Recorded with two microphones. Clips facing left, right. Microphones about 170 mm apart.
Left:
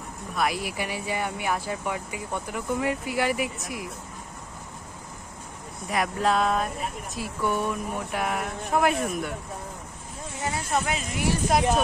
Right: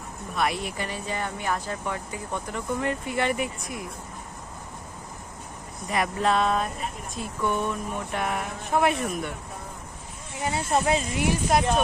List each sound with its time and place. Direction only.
0.4 s speech: 5° left (ahead or behind)
5.9 s speech: centre (ahead or behind)
10.4 s speech: 25° right (ahead or behind)